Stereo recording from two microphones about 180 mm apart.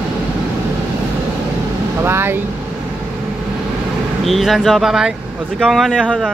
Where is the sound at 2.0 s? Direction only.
15° right (ahead or behind).